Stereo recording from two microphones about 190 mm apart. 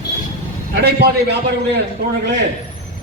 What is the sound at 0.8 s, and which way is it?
Speech, 60° right (ahead or behind).